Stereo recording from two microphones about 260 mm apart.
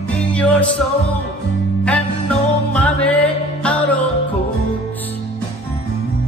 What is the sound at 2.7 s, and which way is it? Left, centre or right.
Music, centre.